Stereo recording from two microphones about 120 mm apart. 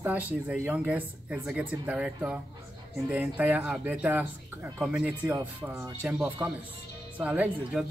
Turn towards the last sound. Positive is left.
turn(degrees=-10)  # may be behind; listen again after turning